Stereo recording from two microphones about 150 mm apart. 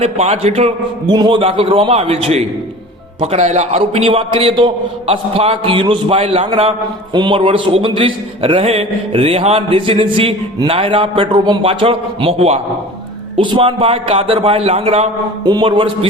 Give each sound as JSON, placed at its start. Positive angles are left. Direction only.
{"t": 0.0, "sound": "a man's voice", "side_deg": -45}
{"t": 1.0, "sound": "a man's voice", "side_deg": -30}
{"t": 15.4, "sound": "a man's voice", "side_deg": -30}